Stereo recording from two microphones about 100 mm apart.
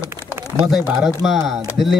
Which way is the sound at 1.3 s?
5° right (ahead or behind).